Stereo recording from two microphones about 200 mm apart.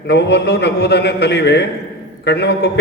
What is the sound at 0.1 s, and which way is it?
A man's voice, 60° left (ahead or behind).